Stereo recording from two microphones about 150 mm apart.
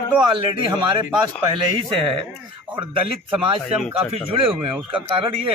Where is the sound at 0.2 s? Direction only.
30° right (ahead or behind).